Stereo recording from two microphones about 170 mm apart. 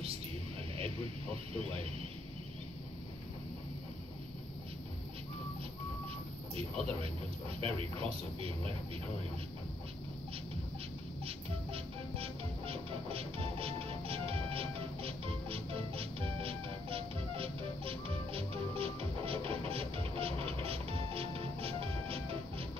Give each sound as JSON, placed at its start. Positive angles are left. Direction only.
{"t": 1.6, "sound": "speech", "side_deg": -35}
{"t": 6.5, "sound": "speech", "side_deg": -35}
{"t": 11.2, "sound": "music", "side_deg": -35}